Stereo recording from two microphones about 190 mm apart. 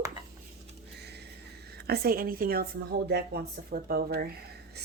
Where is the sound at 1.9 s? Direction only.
50° right (ahead or behind).